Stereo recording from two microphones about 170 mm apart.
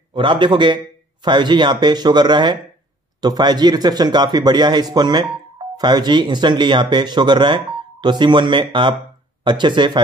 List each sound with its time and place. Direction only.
0.1 s speech: 30° right (ahead or behind)